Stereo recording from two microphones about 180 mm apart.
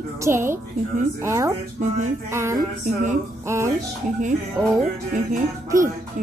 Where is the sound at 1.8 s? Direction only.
40° right (ahead or behind).